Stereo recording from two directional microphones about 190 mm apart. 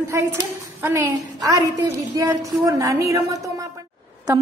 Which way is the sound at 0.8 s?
15° right (ahead or behind).